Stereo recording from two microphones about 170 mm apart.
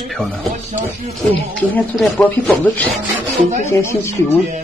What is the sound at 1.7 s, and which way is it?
Speech, 10° left (ahead or behind).